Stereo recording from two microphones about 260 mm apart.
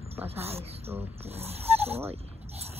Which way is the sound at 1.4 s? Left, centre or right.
Right.